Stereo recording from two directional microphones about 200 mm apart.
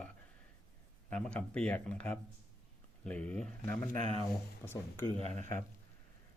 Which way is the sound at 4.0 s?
35° right (ahead or behind).